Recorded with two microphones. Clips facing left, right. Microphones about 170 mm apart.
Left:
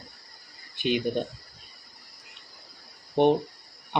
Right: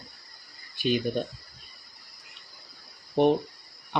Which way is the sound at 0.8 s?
20° left (ahead or behind).